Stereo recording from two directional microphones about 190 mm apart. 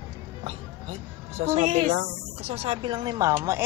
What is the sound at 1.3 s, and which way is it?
Speech, 35° right (ahead or behind).